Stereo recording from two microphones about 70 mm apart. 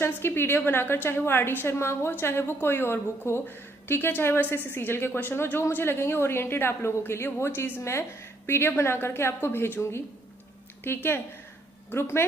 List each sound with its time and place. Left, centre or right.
0.0 s a woman's voice: left